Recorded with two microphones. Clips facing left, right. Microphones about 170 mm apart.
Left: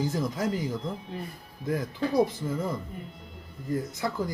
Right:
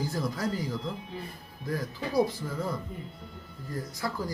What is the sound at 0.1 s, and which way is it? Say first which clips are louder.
Speech: left 2 dB; 20° left (ahead or behind).